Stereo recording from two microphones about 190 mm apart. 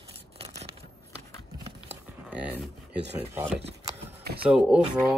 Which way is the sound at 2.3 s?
5° right (ahead or behind).